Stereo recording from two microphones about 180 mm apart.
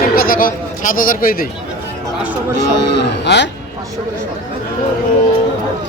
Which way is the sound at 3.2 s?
75° left (ahead or behind).